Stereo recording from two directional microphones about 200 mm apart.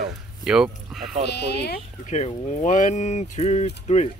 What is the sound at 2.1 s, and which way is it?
Speech, 35° left (ahead or behind).